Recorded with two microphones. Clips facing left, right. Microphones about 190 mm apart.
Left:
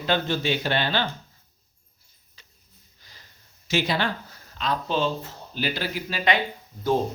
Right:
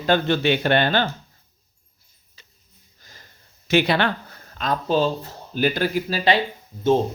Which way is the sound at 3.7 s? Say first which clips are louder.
Right 6 dB; 65° right (ahead or behind).